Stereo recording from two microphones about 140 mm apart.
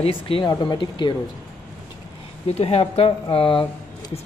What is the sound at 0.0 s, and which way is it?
Speech, 40° left (ahead or behind).